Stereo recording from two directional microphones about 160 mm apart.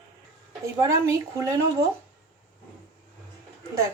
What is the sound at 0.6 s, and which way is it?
Speech, 20° right (ahead or behind).